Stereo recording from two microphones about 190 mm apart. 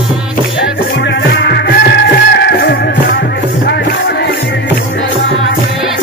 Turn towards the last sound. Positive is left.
turn(degrees=60)  # may be behind; listen again after turning